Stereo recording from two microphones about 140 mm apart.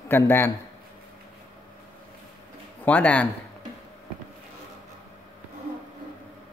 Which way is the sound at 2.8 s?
10° left (ahead or behind).